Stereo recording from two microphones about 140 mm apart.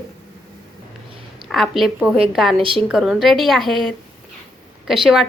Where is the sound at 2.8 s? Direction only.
5° right (ahead or behind).